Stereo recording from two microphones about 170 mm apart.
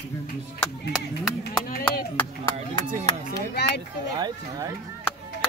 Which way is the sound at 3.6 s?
75° left (ahead or behind).